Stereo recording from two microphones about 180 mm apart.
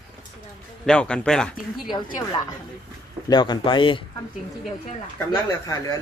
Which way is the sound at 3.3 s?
25° left (ahead or behind).